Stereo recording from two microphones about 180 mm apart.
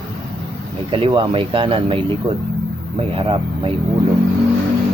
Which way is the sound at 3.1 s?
30° right (ahead or behind).